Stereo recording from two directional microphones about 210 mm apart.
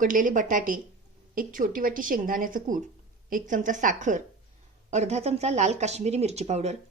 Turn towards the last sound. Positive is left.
turn(degrees=-30)  # may be behind; listen again after turning